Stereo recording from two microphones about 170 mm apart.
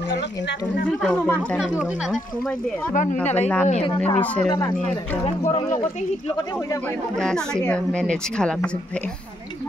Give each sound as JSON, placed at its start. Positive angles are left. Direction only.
{"t": 0.1, "sound": "speech", "side_deg": 80}
{"t": 1.0, "sound": "speech", "side_deg": 5}
{"t": 1.6, "sound": "speech", "side_deg": -5}
{"t": 2.9, "sound": "speech", "side_deg": 50}
{"t": 3.3, "sound": "speech", "side_deg": 10}
{"t": 3.6, "sound": "speech", "side_deg": 40}
{"t": 4.2, "sound": "speech", "side_deg": 10}
{"t": 5.2, "sound": "speech", "side_deg": 35}
{"t": 6.2, "sound": "speech", "side_deg": 25}
{"t": 7.2, "sound": "speech", "side_deg": 5}